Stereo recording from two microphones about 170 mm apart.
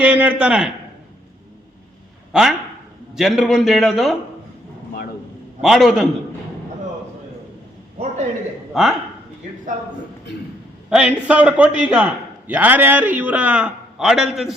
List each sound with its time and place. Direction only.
0.0 s a man's voice: 5° right (ahead or behind)
2.3 s a man's voice: 5° right (ahead or behind)
5.6 s a man's voice: centre (ahead or behind)
8.7 s speech: centre (ahead or behind)
10.8 s a man's voice: 5° right (ahead or behind)